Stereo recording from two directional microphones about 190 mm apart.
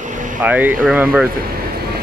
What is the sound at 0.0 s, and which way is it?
Vehicle, 40° right (ahead or behind).